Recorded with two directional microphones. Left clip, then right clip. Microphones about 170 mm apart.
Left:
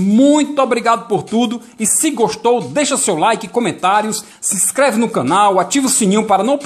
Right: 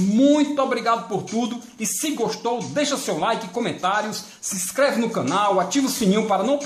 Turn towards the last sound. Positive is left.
turn(degrees=30)  # may be behind; listen again after turning